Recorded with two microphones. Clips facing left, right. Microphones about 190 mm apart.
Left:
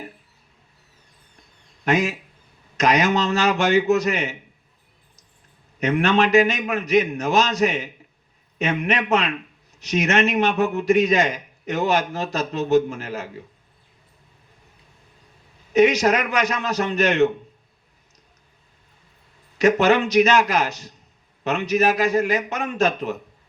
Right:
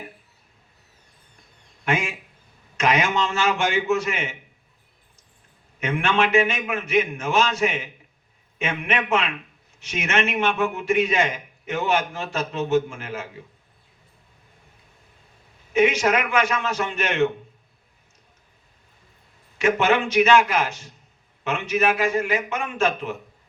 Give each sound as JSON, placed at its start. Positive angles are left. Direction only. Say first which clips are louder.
{"t": 1.8, "sound": "a man's voice", "louder": "left 4 dB", "side_deg": 40}
{"t": 5.8, "sound": "a man's voice", "louder": "left 4 dB", "side_deg": 40}
{"t": 15.7, "sound": "a man's voice", "louder": "left 3 dB", "side_deg": 35}
{"t": 19.5, "sound": "a man's voice", "louder": "left 3 dB", "side_deg": 40}